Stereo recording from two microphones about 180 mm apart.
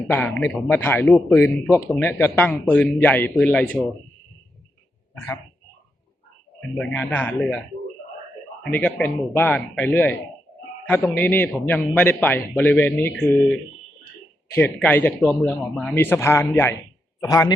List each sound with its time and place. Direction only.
0.1 s a man's voice: 10° left (ahead or behind)
5.1 s a sound: 15° left (ahead or behind)
6.7 s a man's voice: 10° left (ahead or behind)
8.7 s a man's voice: 10° left (ahead or behind)
14.8 s a man's voice: 10° left (ahead or behind)